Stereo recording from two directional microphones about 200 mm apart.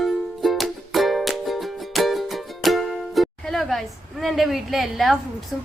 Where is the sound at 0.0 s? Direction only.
Centre (ahead or behind).